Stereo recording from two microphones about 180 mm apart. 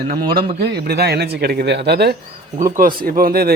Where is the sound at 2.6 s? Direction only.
50° right (ahead or behind).